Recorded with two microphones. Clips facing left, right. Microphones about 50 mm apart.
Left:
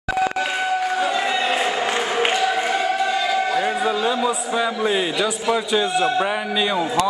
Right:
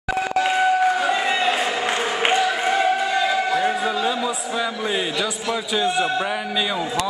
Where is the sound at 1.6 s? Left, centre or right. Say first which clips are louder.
Left 1 dB; centre.